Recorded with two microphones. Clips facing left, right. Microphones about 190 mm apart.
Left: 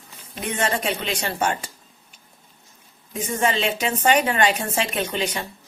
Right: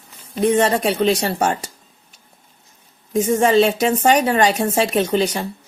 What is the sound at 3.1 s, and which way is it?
A woman's voice, 40° right (ahead or behind).